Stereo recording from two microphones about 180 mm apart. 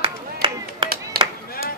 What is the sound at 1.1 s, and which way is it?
Chop, 55° right (ahead or behind).